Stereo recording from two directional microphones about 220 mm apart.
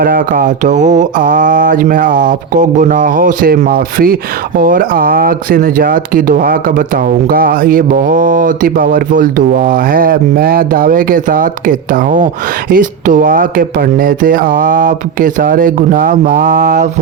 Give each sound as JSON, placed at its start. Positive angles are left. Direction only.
{"t": 0.0, "sound": "speech", "side_deg": -40}